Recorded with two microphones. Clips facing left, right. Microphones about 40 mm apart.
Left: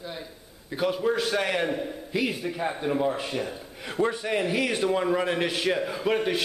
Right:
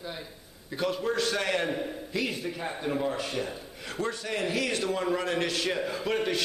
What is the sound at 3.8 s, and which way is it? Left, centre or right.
A man's voice, centre.